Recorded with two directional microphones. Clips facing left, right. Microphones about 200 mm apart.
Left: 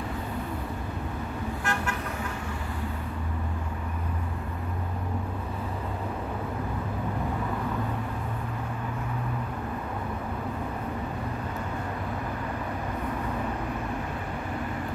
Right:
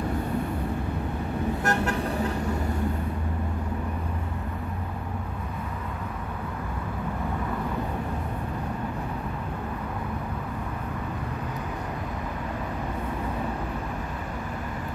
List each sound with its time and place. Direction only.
1.6 s vehicle: 40° right (ahead or behind)